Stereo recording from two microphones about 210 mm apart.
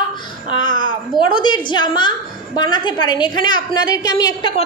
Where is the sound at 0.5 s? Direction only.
20° left (ahead or behind).